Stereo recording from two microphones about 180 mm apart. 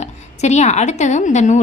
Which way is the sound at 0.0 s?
40° left (ahead or behind).